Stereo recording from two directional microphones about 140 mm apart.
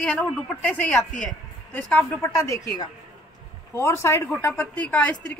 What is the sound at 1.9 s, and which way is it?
Speech, 10° left (ahead or behind).